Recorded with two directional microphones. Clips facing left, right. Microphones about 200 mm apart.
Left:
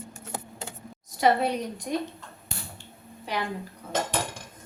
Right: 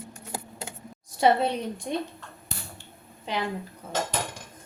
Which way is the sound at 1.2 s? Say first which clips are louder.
Right 1 dB; 25° right (ahead or behind).